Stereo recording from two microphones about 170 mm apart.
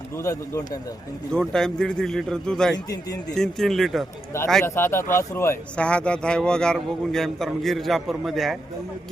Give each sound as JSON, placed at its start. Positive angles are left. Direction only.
{"t": 0.2, "sound": "speech", "side_deg": 20}
{"t": 1.3, "sound": "a man's voice", "side_deg": 5}
{"t": 2.7, "sound": "a man's voice", "side_deg": 20}
{"t": 3.3, "sound": "a man's voice", "side_deg": 0}
{"t": 4.6, "sound": "a man's voice", "side_deg": 15}